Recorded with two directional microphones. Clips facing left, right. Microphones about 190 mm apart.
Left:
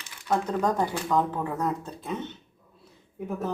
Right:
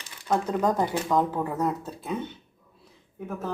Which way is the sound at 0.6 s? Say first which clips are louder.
Right 1 dB; 10° right (ahead or behind).